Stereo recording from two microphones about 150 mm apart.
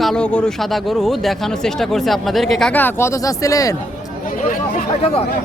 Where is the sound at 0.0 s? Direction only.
5° left (ahead or behind).